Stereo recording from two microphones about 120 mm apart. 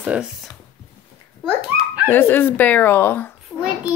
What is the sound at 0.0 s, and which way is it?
Speech, 10° right (ahead or behind).